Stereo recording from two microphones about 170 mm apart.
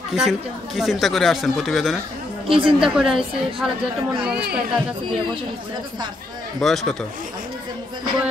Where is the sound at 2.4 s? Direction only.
30° right (ahead or behind).